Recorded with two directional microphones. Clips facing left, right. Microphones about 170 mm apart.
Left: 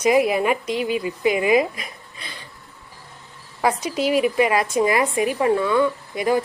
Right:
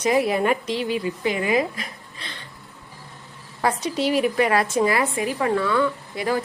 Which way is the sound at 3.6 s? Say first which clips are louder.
Left 1 dB; 10° left (ahead or behind).